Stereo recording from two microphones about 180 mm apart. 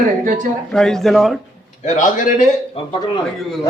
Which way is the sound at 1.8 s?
45° left (ahead or behind).